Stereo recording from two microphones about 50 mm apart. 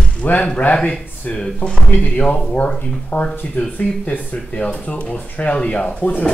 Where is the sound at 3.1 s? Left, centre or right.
Left.